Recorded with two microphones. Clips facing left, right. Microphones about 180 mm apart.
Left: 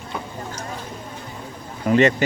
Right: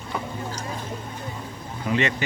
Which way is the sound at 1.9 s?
45° left (ahead or behind).